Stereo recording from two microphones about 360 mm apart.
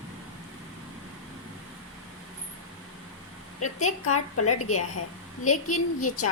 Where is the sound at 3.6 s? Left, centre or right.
Left.